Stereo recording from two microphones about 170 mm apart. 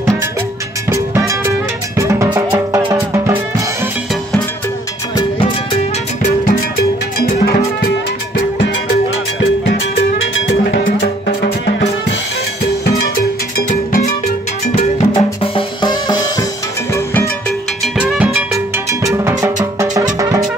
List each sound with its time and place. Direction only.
0.8 s music: 15° right (ahead or behind)
5.1 s music: 35° left (ahead or behind)
11.4 s music: 90° left
13.6 s music: 55° left (ahead or behind)
14.8 s drum: 35° left (ahead or behind)
16.9 s music: 15° left (ahead or behind)
17.9 s music: 5° right (ahead or behind)
19.1 s music: 15° right (ahead or behind)